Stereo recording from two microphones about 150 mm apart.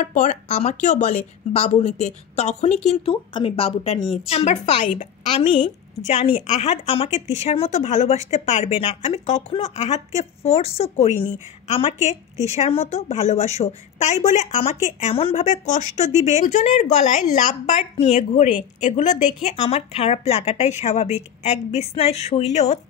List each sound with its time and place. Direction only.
0.0 s a woman's voice: 55° left (ahead or behind)
4.6 s a woman's voice: 55° left (ahead or behind)
6.4 s a woman's voice: 50° left (ahead or behind)